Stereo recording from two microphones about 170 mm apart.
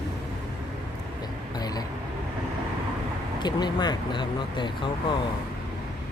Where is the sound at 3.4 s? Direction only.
25° left (ahead or behind).